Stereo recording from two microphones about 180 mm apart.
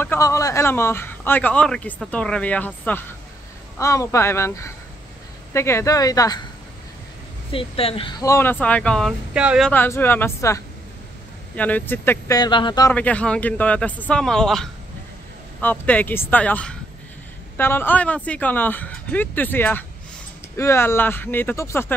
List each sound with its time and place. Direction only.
0.0 s a man's voice: 15° left (ahead or behind)
7.5 s a woman's voice: 30° left (ahead or behind)
8.3 s a man's voice: 10° left (ahead or behind); by 9.7 s 5° right (ahead or behind)
9.7 s a man's voice: 10° left (ahead or behind)
12.9 s a man's voice: 5° left (ahead or behind)